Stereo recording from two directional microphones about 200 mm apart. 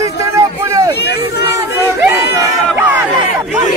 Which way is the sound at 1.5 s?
15° right (ahead or behind).